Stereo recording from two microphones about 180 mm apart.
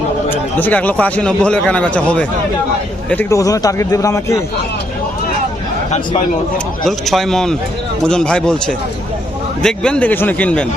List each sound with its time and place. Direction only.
0.3 s a man's voice: 10° left (ahead or behind)
6.8 s a man's voice: centre (ahead or behind)